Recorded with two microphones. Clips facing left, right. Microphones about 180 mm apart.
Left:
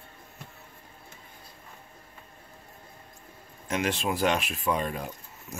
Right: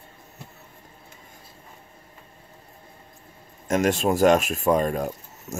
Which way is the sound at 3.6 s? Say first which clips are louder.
Right 7 dB; 45° right (ahead or behind).